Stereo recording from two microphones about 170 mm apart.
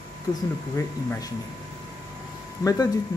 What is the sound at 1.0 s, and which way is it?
Speech, 20° left (ahead or behind).